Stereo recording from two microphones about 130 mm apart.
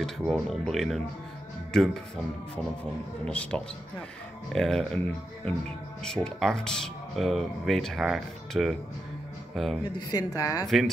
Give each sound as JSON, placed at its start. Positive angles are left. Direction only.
{"t": 0.0, "sound": "speech", "side_deg": 0}
{"t": 3.3, "sound": "speech", "side_deg": 10}
{"t": 9.9, "sound": "a woman's voice", "side_deg": 30}